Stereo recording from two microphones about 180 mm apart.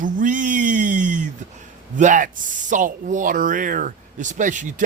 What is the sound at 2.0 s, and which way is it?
Speech, 45° right (ahead or behind).